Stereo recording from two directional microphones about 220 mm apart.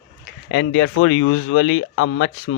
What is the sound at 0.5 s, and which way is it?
Speech, 55° left (ahead or behind).